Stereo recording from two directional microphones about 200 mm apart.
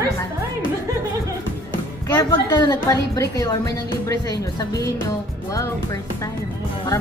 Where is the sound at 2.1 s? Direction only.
20° left (ahead or behind).